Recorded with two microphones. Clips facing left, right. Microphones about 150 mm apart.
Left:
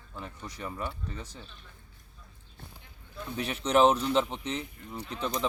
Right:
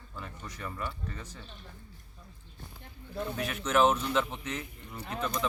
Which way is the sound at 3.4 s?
35° left (ahead or behind).